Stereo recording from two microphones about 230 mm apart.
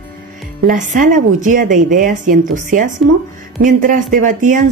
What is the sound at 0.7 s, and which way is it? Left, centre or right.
A woman's voice, right.